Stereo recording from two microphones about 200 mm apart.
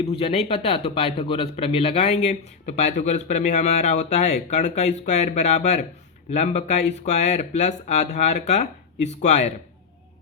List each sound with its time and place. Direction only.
0.0 s speech: 30° left (ahead or behind)